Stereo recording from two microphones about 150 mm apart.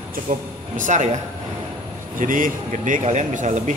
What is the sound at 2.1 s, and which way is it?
Speech, 65° right (ahead or behind).